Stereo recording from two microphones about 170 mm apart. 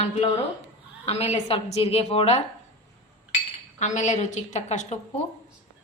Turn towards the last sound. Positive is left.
turn(degrees=45)  # may be behind; listen again after turning